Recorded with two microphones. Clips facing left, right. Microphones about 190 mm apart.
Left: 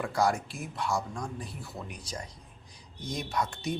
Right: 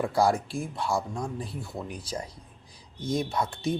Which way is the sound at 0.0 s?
30° right (ahead or behind).